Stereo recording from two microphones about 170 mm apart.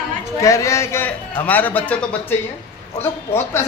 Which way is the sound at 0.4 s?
20° left (ahead or behind).